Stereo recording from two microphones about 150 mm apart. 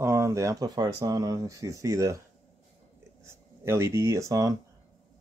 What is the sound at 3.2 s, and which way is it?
Speech, 15° right (ahead or behind).